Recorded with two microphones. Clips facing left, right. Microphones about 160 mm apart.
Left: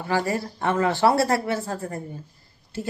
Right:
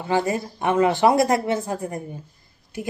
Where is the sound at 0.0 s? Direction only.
20° right (ahead or behind).